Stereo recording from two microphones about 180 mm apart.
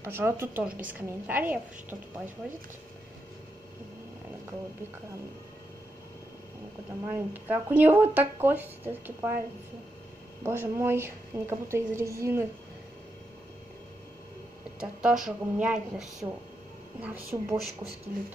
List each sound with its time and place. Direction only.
0.0 s a woman's voice: 15° right (ahead or behind)
7.1 s a woman's voice: 10° right (ahead or behind)
10.4 s a woman's voice: 15° right (ahead or behind)
14.8 s a woman's voice: 5° right (ahead or behind)
18.1 s speech: 50° right (ahead or behind)